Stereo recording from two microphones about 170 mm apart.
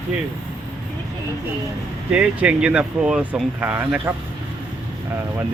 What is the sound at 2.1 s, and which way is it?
Speech, 10° right (ahead or behind).